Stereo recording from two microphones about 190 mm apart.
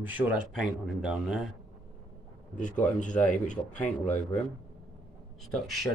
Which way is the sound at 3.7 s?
5° left (ahead or behind).